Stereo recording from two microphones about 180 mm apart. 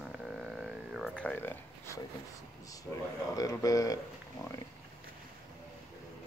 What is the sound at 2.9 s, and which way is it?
Speech, 10° left (ahead or behind).